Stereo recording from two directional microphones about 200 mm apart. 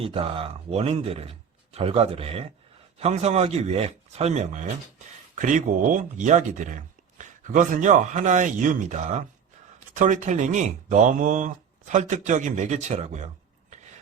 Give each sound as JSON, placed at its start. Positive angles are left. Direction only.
{"t": 0.0, "sound": "speech", "side_deg": -30}